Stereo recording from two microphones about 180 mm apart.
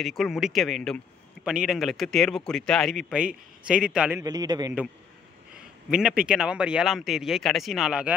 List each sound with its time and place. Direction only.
0.0 s a man's voice: centre (ahead or behind)
4.2 s a man's voice: 20° right (ahead or behind)
5.6 s a man's voice: 5° right (ahead or behind)